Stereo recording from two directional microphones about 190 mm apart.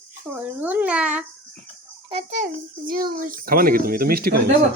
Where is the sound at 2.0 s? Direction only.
35° right (ahead or behind).